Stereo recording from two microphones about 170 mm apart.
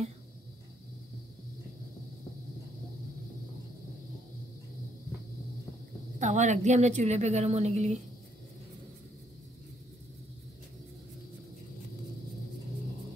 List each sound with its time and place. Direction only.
6.1 s a woman's voice: 45° right (ahead or behind)